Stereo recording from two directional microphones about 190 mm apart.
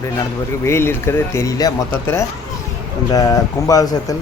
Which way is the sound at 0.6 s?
15° left (ahead or behind).